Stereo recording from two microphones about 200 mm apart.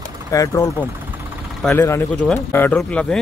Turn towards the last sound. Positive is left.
turn(degrees=5)  # may be behind; listen again after turning